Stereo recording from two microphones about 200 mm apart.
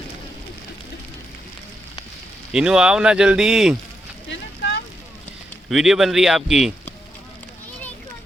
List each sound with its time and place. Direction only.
2.5 s speech: 5° right (ahead or behind)
4.3 s a sound: 65° left (ahead or behind)
5.6 s speech: centre (ahead or behind)